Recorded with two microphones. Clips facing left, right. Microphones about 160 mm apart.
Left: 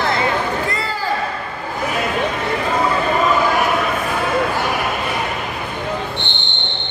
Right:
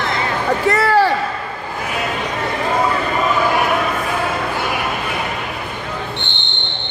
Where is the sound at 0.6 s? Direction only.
75° right (ahead or behind).